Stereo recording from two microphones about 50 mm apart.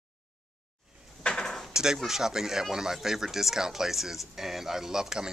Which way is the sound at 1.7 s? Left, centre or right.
Centre.